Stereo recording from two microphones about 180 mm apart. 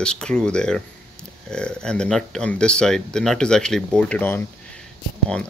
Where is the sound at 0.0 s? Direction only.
5° left (ahead or behind).